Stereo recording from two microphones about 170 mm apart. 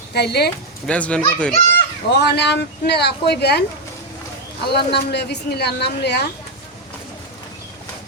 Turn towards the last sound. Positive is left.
turn(degrees=75)  # may be behind; listen again after turning